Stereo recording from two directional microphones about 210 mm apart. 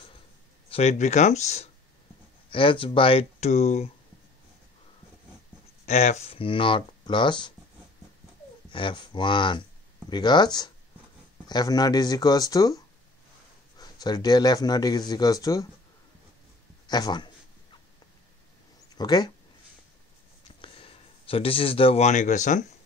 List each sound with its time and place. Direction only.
0.7 s a man's voice: 30° left (ahead or behind)
5.9 s a man's voice: 30° left (ahead or behind)
8.6 s a man's voice: 25° left (ahead or behind)
16.8 s speech: 20° left (ahead or behind)
18.9 s a man's voice: 20° left (ahead or behind)
20.6 s speech: 25° left (ahead or behind)